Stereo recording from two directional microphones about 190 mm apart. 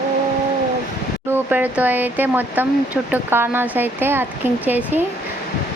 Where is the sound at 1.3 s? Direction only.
10° right (ahead or behind).